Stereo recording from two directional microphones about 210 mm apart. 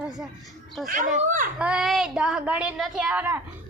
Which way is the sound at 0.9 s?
35° right (ahead or behind).